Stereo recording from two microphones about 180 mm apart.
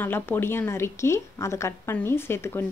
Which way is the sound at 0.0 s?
10° left (ahead or behind).